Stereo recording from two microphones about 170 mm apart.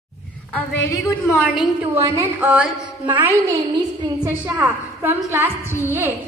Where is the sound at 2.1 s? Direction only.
10° right (ahead or behind).